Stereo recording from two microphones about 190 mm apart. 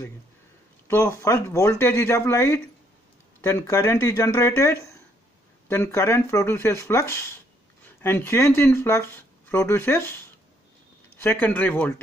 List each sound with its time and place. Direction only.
0.8 s speech: 15° left (ahead or behind)